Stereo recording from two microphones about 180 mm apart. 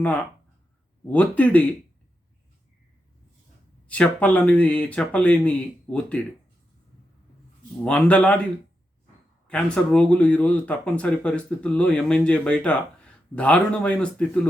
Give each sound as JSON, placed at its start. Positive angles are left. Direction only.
{"t": 1.0, "sound": "speech", "side_deg": 10}
{"t": 3.8, "sound": "speech", "side_deg": 5}
{"t": 7.8, "sound": "speech", "side_deg": 5}
{"t": 9.5, "sound": "speech", "side_deg": 5}